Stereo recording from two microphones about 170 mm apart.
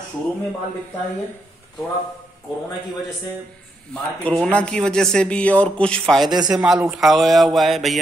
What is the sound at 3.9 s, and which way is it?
Speech, 5° left (ahead or behind).